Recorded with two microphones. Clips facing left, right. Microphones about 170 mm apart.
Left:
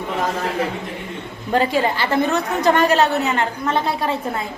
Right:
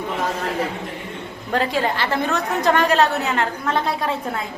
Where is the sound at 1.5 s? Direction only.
Centre (ahead or behind).